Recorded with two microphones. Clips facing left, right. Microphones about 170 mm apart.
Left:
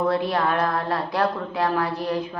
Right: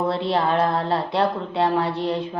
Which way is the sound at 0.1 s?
25° right (ahead or behind).